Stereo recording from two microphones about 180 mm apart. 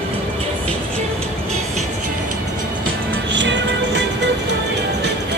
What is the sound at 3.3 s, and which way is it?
Music, 90° right.